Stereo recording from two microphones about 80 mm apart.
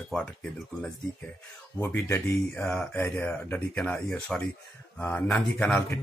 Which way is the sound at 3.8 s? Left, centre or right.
Centre.